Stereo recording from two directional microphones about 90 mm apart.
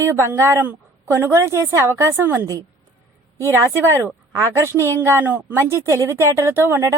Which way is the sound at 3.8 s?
30° right (ahead or behind).